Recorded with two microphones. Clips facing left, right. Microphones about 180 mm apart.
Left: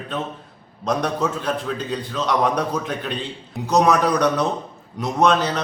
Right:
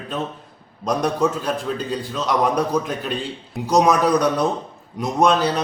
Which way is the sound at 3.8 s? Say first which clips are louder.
Right 1 dB; 10° right (ahead or behind).